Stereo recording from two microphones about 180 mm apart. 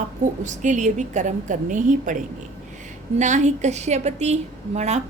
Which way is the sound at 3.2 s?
40° right (ahead or behind).